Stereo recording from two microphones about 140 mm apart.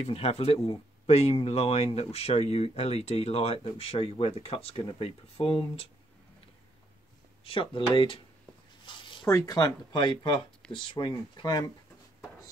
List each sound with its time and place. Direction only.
0.0 s speech: 45° left (ahead or behind)
7.4 s speech: 40° left (ahead or behind)
8.8 s a sound: 35° left (ahead or behind)
9.3 s speech: 25° left (ahead or behind)